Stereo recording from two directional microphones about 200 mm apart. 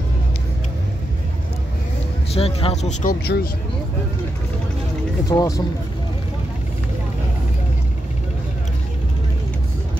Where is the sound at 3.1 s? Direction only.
50° left (ahead or behind).